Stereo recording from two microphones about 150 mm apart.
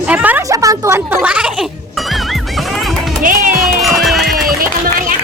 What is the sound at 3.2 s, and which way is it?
Music, 65° right (ahead or behind).